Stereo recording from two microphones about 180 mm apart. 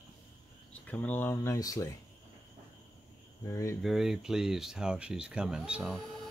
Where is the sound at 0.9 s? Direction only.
10° left (ahead or behind).